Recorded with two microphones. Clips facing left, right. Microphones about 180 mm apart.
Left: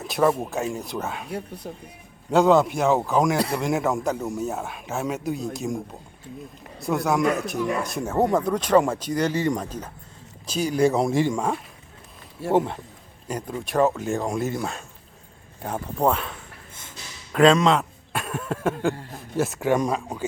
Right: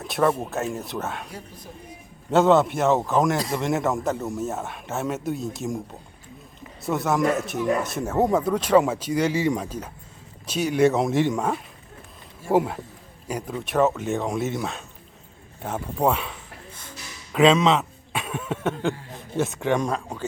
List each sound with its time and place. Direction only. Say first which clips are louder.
0.0 s speech: left 1 dB; centre (ahead or behind)
1.3 s speech: left 8 dB; 65° left (ahead or behind)
2.3 s speech: even; centre (ahead or behind)